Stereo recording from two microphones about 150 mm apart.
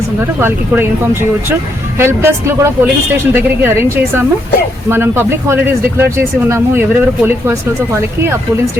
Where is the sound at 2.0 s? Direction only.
15° right (ahead or behind).